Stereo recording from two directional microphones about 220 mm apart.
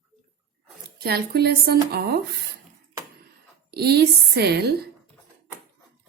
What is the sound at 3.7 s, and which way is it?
A woman's voice, 45° right (ahead or behind).